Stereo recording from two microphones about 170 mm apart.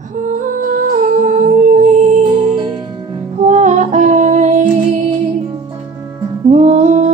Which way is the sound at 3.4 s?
45° right (ahead or behind).